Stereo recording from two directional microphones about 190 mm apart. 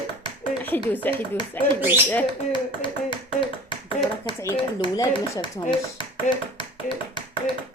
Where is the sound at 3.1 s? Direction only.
25° left (ahead or behind).